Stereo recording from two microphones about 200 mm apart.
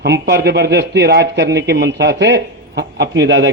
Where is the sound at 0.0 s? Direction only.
60° right (ahead or behind).